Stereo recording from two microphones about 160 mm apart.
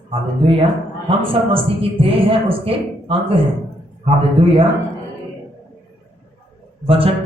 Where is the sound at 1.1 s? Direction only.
35° right (ahead or behind).